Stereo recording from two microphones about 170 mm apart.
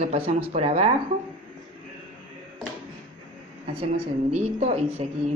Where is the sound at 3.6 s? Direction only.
40° right (ahead or behind).